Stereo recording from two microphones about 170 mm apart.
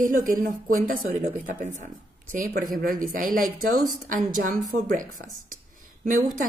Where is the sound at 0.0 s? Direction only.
50° right (ahead or behind).